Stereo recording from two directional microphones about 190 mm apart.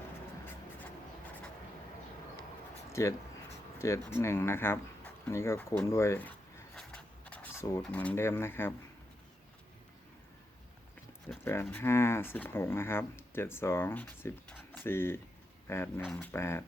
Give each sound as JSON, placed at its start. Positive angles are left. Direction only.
{"t": 2.9, "sound": "speech", "side_deg": 15}
{"t": 6.7, "sound": "a sound", "side_deg": 5}
{"t": 7.8, "sound": "speech", "side_deg": 5}
{"t": 11.4, "sound": "speech", "side_deg": 10}